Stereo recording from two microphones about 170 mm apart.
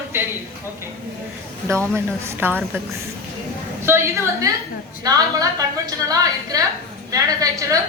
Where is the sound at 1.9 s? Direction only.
15° right (ahead or behind).